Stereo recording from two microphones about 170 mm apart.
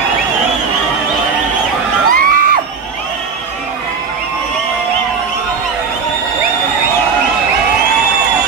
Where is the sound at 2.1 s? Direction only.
55° right (ahead or behind).